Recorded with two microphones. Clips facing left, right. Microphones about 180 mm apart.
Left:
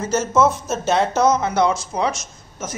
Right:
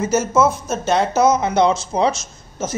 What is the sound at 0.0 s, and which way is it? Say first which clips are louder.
Speech: right 1 dB; 10° right (ahead or behind).